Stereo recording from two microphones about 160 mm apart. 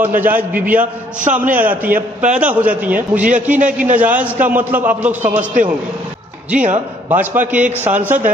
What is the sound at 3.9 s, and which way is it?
A man's voice, 10° right (ahead or behind).